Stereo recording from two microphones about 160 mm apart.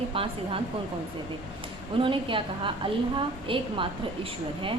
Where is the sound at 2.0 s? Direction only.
30° right (ahead or behind).